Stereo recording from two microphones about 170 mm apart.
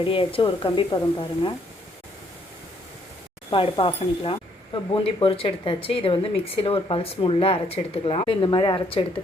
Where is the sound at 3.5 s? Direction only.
30° left (ahead or behind).